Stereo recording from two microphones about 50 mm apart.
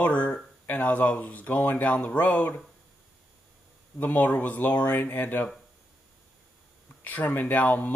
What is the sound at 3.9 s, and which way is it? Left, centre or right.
Speech, left.